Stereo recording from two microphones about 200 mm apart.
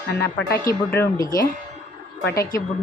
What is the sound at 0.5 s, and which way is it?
Speech, 15° left (ahead or behind).